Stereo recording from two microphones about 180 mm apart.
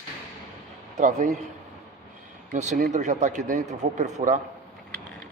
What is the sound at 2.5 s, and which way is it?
A man's voice, 45° right (ahead or behind).